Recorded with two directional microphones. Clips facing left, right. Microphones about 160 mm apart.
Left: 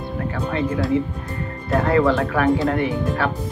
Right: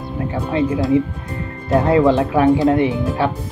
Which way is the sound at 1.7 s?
20° right (ahead or behind).